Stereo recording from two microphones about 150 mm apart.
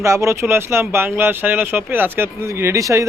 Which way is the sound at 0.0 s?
20° right (ahead or behind).